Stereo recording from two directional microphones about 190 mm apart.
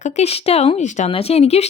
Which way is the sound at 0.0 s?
35° left (ahead or behind).